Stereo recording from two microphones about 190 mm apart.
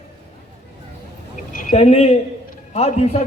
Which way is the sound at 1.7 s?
30° left (ahead or behind).